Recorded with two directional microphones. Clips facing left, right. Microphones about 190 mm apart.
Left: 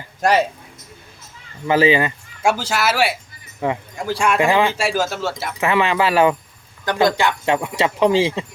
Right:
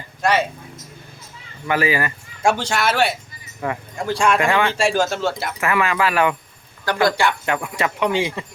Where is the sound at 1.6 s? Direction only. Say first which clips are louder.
Left 5 dB; 25° left (ahead or behind).